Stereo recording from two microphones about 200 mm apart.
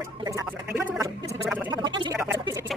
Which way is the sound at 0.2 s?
15° right (ahead or behind).